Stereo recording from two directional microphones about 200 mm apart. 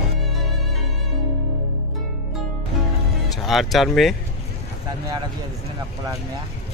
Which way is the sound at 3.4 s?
Centre (ahead or behind).